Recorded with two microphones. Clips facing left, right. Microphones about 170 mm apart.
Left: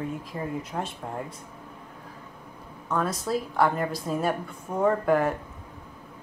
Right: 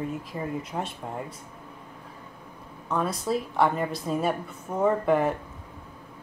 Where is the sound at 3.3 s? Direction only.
5° right (ahead or behind).